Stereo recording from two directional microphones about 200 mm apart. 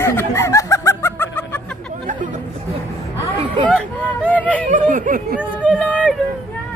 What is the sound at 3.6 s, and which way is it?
Hubbub, 5° left (ahead or behind).